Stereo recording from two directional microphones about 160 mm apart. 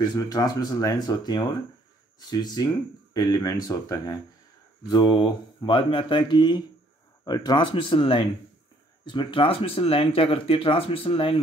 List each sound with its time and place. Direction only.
0.0 s speech: 25° left (ahead or behind)